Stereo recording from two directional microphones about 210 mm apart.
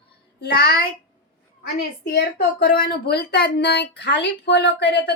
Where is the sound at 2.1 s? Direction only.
50° left (ahead or behind).